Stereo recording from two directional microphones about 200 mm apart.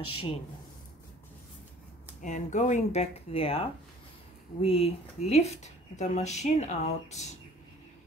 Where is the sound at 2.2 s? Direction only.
35° left (ahead or behind).